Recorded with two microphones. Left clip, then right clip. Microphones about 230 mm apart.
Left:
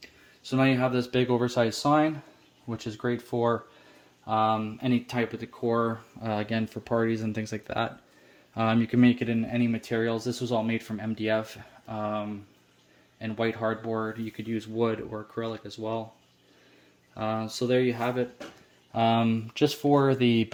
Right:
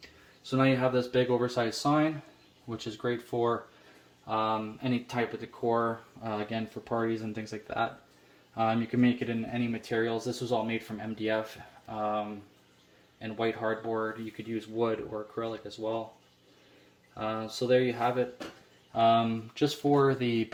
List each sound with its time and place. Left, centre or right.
0.5 s speech: left
4.3 s speech: left
17.2 s speech: left